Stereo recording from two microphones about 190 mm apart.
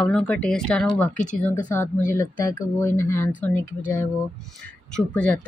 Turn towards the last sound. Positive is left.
turn(degrees=5)  # may be behind; listen again after turning